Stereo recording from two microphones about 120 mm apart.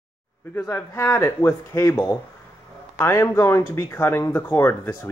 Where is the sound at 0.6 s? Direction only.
25° left (ahead or behind).